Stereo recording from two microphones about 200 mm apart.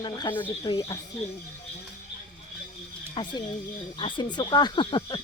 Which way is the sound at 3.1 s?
25° left (ahead or behind).